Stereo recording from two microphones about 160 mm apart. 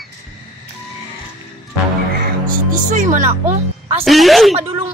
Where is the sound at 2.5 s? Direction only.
50° right (ahead or behind).